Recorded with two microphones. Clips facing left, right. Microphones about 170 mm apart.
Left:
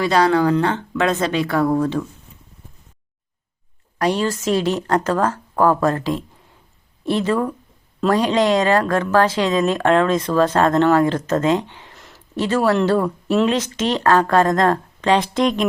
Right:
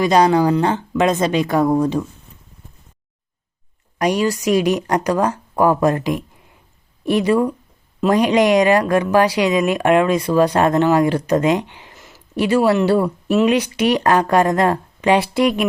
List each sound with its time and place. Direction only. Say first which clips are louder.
0.0 s speech: right 2 dB; 15° right (ahead or behind)
3.9 s speech: right 2 dB; 15° right (ahead or behind)
11.9 s a sound: right 1 dB; centre (ahead or behind)
12.4 s speech: right 2 dB; 10° right (ahead or behind)